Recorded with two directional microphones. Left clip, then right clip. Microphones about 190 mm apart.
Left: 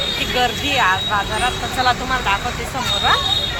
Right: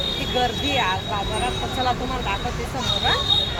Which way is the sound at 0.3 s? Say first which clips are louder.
Left 4 dB; centre (ahead or behind).